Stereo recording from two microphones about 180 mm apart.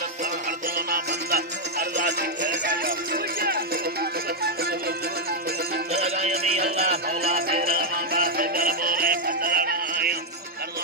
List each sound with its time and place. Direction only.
0.9 s music: 55° right (ahead or behind)
5.9 s music: 35° right (ahead or behind)
7.3 s music: 55° right (ahead or behind)